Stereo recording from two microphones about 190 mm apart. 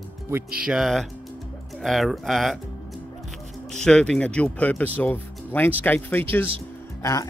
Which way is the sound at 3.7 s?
5° left (ahead or behind).